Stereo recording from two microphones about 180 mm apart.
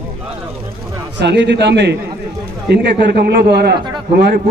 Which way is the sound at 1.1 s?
75° right (ahead or behind).